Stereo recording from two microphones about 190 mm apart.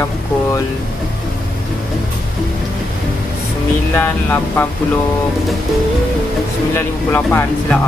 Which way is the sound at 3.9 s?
10° left (ahead or behind).